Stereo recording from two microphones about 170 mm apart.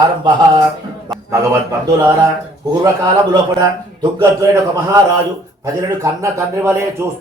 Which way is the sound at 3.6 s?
15° right (ahead or behind).